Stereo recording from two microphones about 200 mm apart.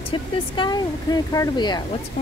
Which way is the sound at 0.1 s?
25° left (ahead or behind).